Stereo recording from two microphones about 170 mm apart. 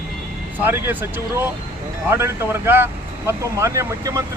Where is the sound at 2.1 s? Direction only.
15° right (ahead or behind).